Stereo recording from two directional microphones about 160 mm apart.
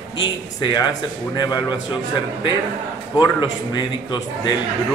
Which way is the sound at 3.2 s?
25° left (ahead or behind).